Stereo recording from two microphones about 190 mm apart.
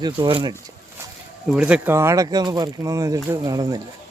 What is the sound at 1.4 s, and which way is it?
Speech, 5° right (ahead or behind).